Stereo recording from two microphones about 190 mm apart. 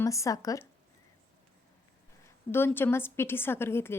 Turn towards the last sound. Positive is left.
turn(degrees=10)  # may be behind; listen again after turning